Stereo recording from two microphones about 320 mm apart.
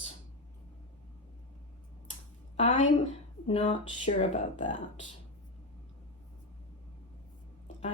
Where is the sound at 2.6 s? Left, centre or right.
Left.